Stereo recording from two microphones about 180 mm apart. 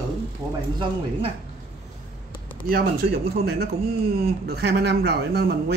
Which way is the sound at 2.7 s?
60° right (ahead or behind).